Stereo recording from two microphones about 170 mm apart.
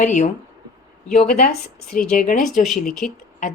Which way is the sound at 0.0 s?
45° left (ahead or behind).